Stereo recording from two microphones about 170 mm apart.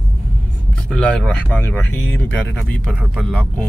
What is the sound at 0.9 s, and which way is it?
Speech, 5° left (ahead or behind).